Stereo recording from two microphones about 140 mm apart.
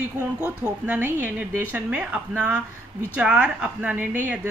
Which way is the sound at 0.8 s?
15° right (ahead or behind).